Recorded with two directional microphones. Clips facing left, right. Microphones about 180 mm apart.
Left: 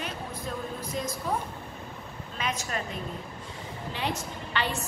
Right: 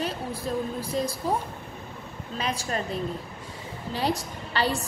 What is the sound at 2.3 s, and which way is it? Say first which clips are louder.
A woman's voice: right 3 dB; 35° right (ahead or behind).